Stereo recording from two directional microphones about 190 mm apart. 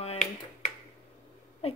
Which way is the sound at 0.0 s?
35° left (ahead or behind).